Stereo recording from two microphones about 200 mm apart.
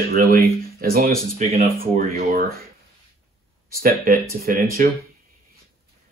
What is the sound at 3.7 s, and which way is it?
Speech, 45° right (ahead or behind).